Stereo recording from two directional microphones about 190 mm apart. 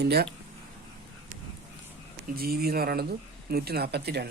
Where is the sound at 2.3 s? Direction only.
55° right (ahead or behind).